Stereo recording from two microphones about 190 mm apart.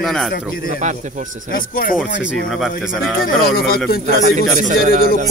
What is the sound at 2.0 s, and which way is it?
Speech, 70° left (ahead or behind).